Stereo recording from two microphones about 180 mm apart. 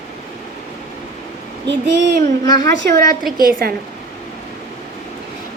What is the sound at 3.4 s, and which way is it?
Speech, 55° right (ahead or behind).